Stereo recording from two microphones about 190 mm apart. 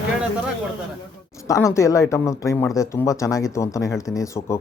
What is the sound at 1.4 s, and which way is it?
Speech, 15° left (ahead or behind).